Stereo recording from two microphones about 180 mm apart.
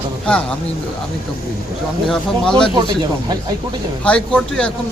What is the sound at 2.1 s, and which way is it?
Speech, 5° left (ahead or behind).